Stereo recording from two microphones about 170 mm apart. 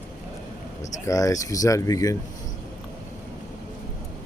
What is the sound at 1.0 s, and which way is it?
Speech, 20° left (ahead or behind).